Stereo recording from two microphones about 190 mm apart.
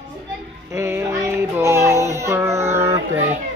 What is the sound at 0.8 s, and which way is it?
Child singing, 15° right (ahead or behind).